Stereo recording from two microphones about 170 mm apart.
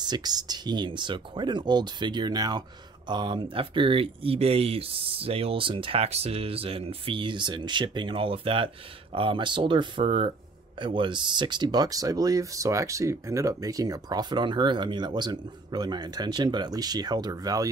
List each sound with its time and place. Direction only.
0.0 s speech: 25° right (ahead or behind)